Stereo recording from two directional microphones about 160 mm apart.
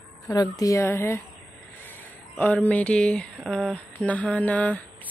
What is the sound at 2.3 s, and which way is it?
Speech, 10° left (ahead or behind).